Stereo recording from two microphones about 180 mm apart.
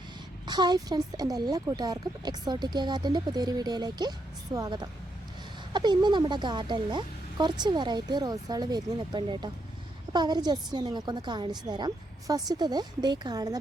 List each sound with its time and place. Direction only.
0.4 s speech: 25° right (ahead or behind)